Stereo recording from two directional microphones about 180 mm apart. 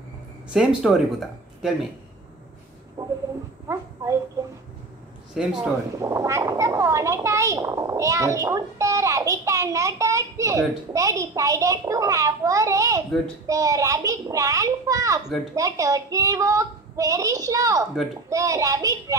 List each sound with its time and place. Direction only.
0.5 s speech: 5° right (ahead or behind)
3.0 s a sound: 15° right (ahead or behind)
3.6 s speech: 15° right (ahead or behind)
5.3 s speech: 5° right (ahead or behind)
5.9 s a woman's voice: 15° right (ahead or behind)